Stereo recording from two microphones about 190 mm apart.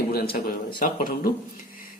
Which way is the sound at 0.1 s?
55° left (ahead or behind).